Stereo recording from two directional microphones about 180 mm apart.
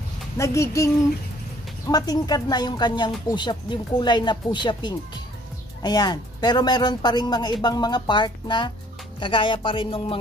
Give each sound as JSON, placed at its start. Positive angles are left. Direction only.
{"t": 0.4, "sound": "speech", "side_deg": 15}
{"t": 1.9, "sound": "speech", "side_deg": 20}